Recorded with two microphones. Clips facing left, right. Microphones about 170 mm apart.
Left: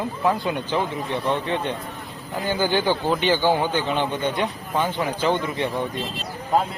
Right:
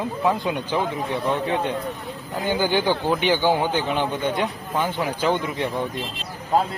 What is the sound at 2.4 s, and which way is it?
A man's voice, 15° right (ahead or behind).